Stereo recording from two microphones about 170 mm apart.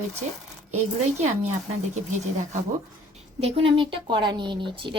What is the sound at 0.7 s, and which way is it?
Speech, 40° right (ahead or behind).